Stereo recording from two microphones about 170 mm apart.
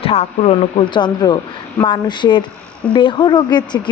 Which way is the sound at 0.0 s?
35° left (ahead or behind).